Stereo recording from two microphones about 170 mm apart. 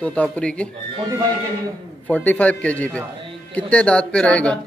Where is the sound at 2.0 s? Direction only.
10° left (ahead or behind).